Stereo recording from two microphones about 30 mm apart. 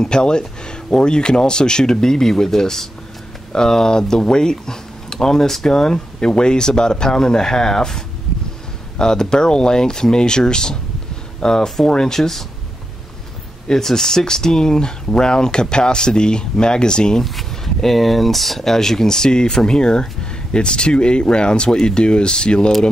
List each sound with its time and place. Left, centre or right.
0.0 s speech: left
6.2 s speech: left
12.2 s speech: centre
13.7 s speech: centre
17.7 s speech: centre; by 22.7 s left